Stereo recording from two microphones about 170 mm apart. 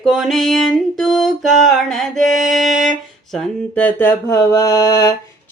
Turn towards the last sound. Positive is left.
turn(degrees=20)  # may be behind; listen again after turning